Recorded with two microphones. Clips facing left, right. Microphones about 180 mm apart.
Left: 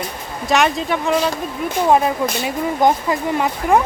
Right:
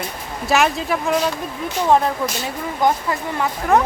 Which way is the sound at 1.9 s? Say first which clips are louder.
Left 1 dB; 10° left (ahead or behind).